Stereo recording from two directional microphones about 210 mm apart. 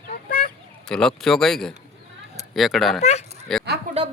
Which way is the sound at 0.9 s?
Centre (ahead or behind).